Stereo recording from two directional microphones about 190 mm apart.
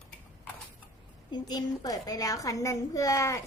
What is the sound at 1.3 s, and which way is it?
A woman's voice, 20° left (ahead or behind).